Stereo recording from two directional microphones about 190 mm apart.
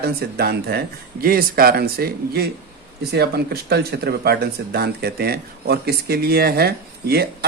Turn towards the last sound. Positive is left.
turn(degrees=-55)  # may be behind; listen again after turning